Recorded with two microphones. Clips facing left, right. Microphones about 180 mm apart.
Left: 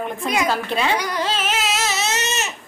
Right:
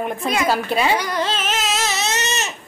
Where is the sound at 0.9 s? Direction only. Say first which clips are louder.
Right 1 dB; 10° left (ahead or behind).